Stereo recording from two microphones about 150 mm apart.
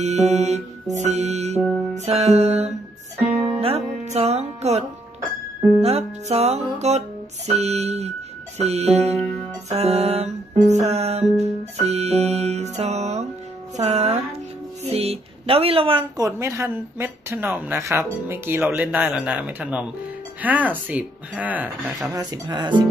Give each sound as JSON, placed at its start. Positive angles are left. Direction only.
{"t": 0.0, "sound": "music", "side_deg": -45}
{"t": 14.9, "sound": "speech", "side_deg": -40}
{"t": 16.2, "sound": "a woman's voice", "side_deg": -20}
{"t": 22.1, "sound": "speech", "side_deg": -30}